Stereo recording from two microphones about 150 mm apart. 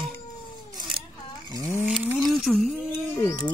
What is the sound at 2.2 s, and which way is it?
Speech, centre (ahead or behind).